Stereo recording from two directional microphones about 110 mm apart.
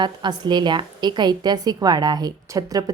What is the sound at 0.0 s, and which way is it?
A woman's voice, 40° right (ahead or behind).